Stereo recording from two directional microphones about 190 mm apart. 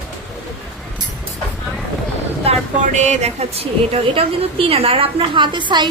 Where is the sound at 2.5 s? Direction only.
30° right (ahead or behind).